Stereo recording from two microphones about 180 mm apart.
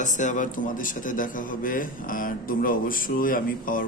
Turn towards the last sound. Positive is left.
turn(degrees=50)  # may be behind; listen again after turning